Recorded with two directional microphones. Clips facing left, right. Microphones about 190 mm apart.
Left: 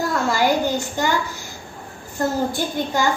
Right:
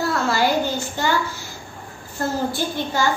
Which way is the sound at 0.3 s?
15° left (ahead or behind).